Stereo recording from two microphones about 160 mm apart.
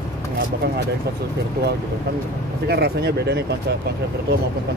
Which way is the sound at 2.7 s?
85° right.